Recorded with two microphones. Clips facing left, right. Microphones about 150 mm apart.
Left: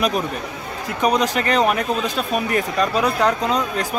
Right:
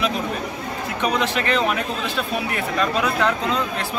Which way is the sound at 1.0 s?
40° left (ahead or behind).